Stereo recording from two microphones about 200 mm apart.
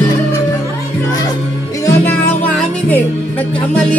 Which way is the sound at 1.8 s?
10° left (ahead or behind).